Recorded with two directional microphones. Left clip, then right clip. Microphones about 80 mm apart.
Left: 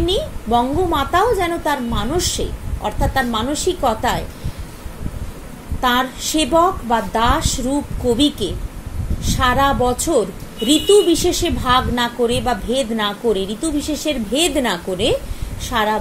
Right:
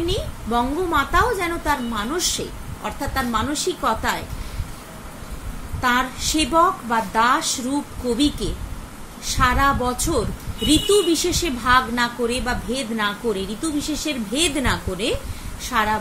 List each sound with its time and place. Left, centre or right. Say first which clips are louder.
0.0 s a woman's voice: left 6 dB; left
5.8 s a woman's voice: left 3 dB; left